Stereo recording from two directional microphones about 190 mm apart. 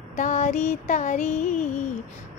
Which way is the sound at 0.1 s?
40° left (ahead or behind).